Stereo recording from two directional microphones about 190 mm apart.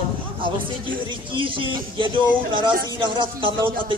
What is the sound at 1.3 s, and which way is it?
Speech, 25° right (ahead or behind).